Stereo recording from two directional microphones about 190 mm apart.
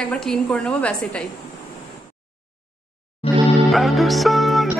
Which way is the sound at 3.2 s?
30° left (ahead or behind).